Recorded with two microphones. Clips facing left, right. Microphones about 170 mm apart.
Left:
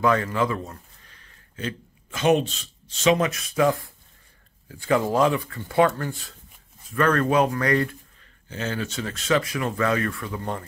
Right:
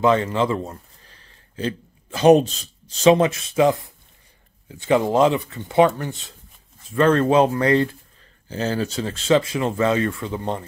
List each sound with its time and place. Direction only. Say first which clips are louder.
0.0 s speech: right 3 dB; 25° right (ahead or behind)